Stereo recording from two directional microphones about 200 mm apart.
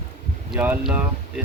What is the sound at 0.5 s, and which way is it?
Speech, 5° right (ahead or behind).